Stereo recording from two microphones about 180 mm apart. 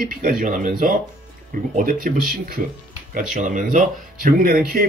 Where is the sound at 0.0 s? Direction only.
55° right (ahead or behind).